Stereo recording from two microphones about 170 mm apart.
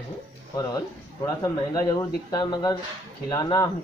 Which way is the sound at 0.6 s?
20° left (ahead or behind).